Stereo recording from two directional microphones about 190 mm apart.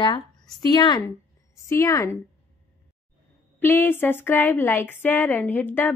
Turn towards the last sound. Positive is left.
turn(degrees=10)  # may be behind; listen again after turning